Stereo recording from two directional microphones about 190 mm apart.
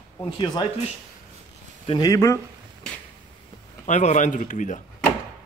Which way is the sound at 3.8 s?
40° left (ahead or behind).